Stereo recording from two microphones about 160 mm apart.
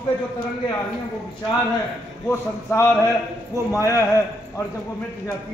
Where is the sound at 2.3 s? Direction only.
15° left (ahead or behind).